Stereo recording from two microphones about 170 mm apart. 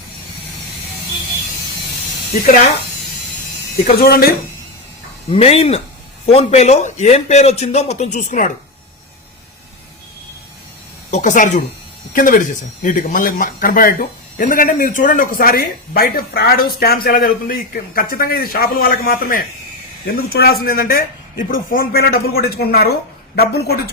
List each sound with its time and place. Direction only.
3.8 s a man's voice: 65° left (ahead or behind)
5.3 s a man's voice: 35° left (ahead or behind)
11.1 s a man's voice: 50° left (ahead or behind); by 23.9 s 70° left (ahead or behind)